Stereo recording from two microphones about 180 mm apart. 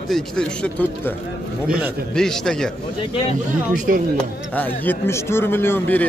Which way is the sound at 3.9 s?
50° right (ahead or behind).